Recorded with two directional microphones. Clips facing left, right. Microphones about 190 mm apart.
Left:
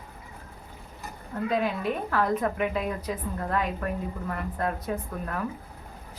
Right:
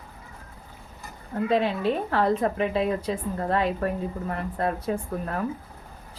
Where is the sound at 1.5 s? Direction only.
30° right (ahead or behind).